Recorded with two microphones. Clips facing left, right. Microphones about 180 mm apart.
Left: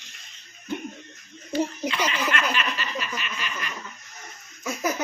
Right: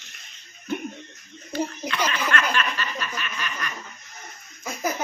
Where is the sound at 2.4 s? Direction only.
20° left (ahead or behind).